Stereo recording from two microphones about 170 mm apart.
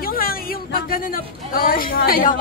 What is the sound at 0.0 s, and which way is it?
Speech, 60° left (ahead or behind).